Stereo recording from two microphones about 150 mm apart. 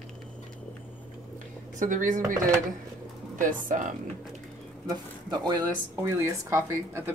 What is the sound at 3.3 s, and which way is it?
Speech, 60° right (ahead or behind).